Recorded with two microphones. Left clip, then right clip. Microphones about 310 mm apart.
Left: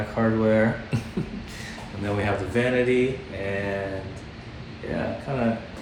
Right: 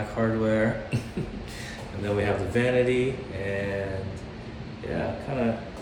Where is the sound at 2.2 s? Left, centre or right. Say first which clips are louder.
Left 1 dB; centre.